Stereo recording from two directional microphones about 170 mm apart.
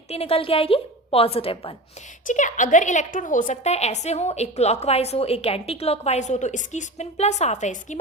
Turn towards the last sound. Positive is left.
turn(degrees=45)  # may be behind; listen again after turning